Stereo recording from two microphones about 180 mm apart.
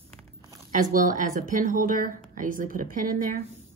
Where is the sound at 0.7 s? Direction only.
50° right (ahead or behind).